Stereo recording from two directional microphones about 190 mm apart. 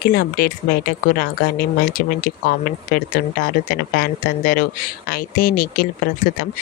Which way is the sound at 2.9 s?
50° left (ahead or behind).